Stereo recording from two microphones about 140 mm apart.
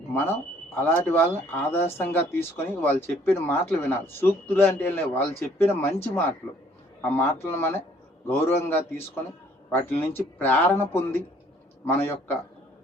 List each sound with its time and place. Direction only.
0.1 s speech: 15° left (ahead or behind)